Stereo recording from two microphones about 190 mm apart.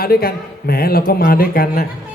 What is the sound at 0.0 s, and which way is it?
A man's voice, 50° left (ahead or behind).